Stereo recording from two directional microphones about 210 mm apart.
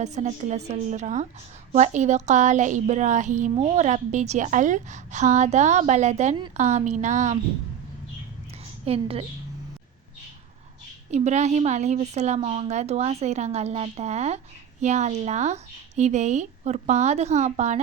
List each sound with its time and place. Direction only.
0.0 s a woman's voice: 35° right (ahead or behind)
8.8 s a woman's voice: 30° right (ahead or behind)
11.1 s a woman's voice: 35° right (ahead or behind)